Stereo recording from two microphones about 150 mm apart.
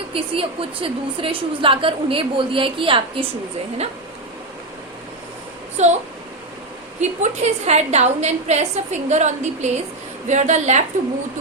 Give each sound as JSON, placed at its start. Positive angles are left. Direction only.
{"t": 0.1, "sound": "a woman's voice", "side_deg": -35}
{"t": 5.7, "sound": "a child's voice", "side_deg": -50}
{"t": 7.0, "sound": "a woman's voice", "side_deg": -50}